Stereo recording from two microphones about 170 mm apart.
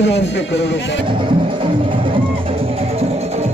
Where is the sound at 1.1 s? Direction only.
30° right (ahead or behind).